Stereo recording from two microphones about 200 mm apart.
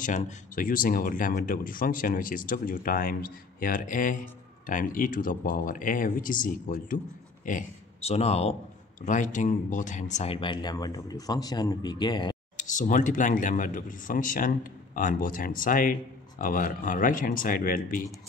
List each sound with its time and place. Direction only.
0.0 s speech: 40° left (ahead or behind); by 12.4 s 20° left (ahead or behind)
12.5 s speech: 40° left (ahead or behind)